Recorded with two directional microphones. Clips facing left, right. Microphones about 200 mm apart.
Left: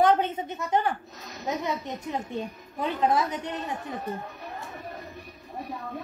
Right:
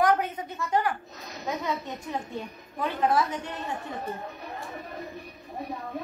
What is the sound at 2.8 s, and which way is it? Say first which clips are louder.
Speech: even; 20° left (ahead or behind).